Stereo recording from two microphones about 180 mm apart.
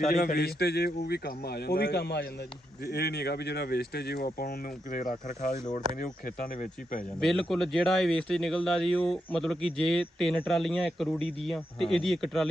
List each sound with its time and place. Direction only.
0.1 s speech: 55° left (ahead or behind)
7.2 s speech: centre (ahead or behind)